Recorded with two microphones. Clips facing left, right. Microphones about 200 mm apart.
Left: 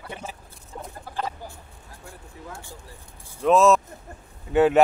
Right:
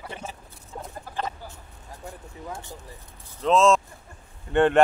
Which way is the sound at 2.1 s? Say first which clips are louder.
Right 3 dB; 20° right (ahead or behind).